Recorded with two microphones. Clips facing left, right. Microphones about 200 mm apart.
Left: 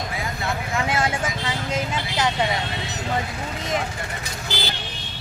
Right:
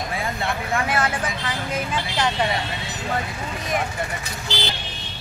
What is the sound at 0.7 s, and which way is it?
Vehicle, 25° left (ahead or behind).